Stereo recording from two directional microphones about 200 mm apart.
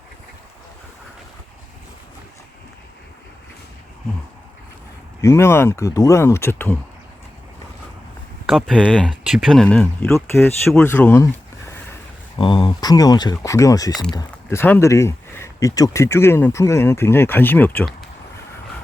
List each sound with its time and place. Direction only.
5.2 s speech: 15° left (ahead or behind)
8.4 s speech: centre (ahead or behind)
10.7 s a sound: 5° left (ahead or behind)
12.4 s speech: 25° left (ahead or behind)
13.9 s speech: 5° left (ahead or behind)